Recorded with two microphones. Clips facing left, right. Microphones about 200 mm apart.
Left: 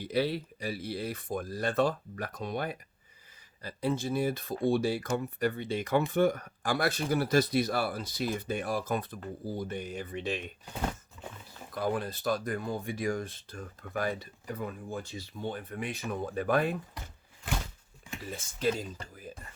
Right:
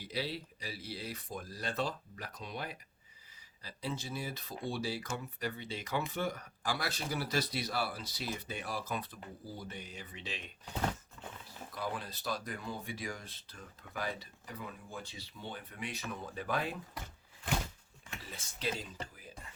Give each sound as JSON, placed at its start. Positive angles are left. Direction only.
{"t": 0.0, "sound": "speech", "side_deg": 55}
{"t": 11.7, "sound": "speech", "side_deg": 50}
{"t": 18.3, "sound": "speech", "side_deg": 45}